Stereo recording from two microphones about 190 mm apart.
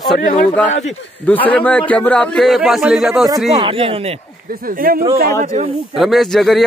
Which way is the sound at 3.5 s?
30° right (ahead or behind).